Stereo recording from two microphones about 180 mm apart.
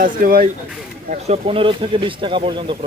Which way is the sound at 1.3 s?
30° right (ahead or behind).